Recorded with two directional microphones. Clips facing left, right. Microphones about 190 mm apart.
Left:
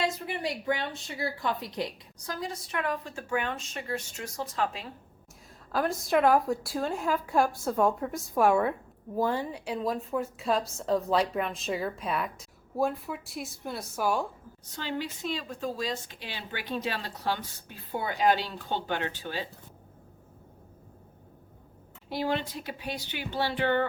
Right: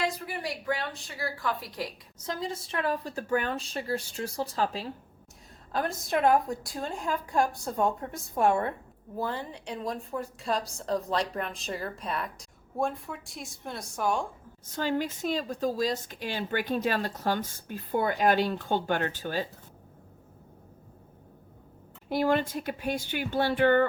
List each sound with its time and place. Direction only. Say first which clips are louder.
0.0 s speech: left 1 dB; 25° left (ahead or behind)
2.2 s a woman's voice: right 2 dB; 25° right (ahead or behind)
5.7 s a woman's voice: left 3 dB; centre (ahead or behind)
14.6 s a woman's voice: right 5 dB; 45° right (ahead or behind)
22.1 s a woman's voice: right 4 dB; 50° right (ahead or behind)